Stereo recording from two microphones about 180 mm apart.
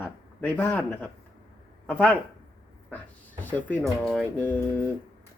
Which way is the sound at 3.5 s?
5° left (ahead or behind).